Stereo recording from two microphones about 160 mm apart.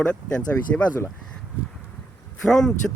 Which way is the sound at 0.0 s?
5° left (ahead or behind).